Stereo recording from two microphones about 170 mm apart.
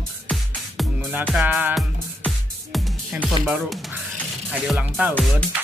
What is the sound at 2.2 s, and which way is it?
Music, centre (ahead or behind).